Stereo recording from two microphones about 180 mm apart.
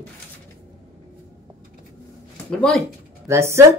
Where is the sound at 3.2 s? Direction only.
15° right (ahead or behind).